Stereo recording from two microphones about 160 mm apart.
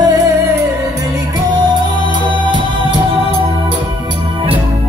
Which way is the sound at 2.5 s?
30° right (ahead or behind).